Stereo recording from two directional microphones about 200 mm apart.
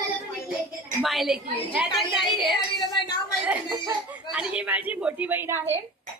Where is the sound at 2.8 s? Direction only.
20° left (ahead or behind).